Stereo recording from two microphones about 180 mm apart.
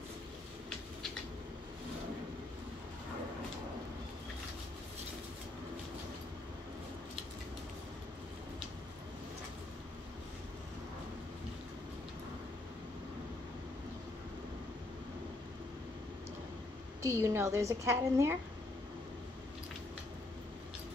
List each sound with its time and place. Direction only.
17.0 s a woman's voice: 15° right (ahead or behind)